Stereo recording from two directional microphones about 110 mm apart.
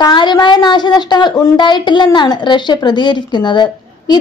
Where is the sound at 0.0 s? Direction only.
40° left (ahead or behind).